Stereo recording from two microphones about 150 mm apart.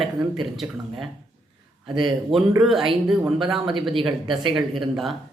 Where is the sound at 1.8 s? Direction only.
30° right (ahead or behind).